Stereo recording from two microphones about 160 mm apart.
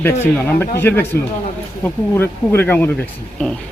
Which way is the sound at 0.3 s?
10° left (ahead or behind).